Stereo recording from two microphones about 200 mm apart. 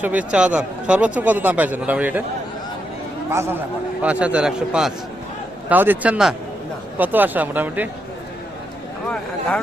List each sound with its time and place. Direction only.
0.0 s a man's voice: 5° right (ahead or behind)
3.2 s a man's voice: 10° right (ahead or behind)